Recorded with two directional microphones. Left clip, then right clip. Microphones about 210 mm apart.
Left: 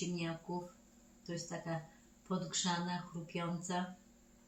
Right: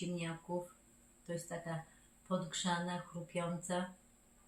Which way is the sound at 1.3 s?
15° right (ahead or behind).